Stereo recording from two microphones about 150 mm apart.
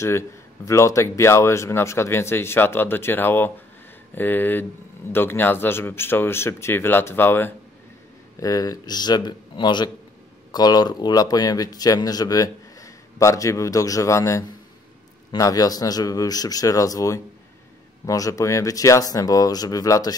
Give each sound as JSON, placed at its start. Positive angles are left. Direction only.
{"t": 0.7, "sound": "speech", "side_deg": 20}